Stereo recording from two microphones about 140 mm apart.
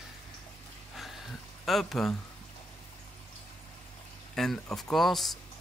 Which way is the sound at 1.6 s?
Centre (ahead or behind).